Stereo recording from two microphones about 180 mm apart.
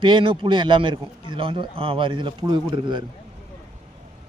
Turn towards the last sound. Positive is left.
turn(degrees=-25)  # may be behind; listen again after turning